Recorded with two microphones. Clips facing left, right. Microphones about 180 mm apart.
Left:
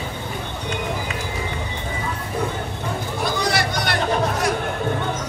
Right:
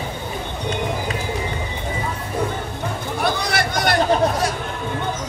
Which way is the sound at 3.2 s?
55° right (ahead or behind).